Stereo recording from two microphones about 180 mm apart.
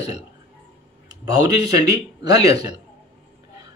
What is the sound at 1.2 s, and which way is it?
A man's voice, 20° right (ahead or behind).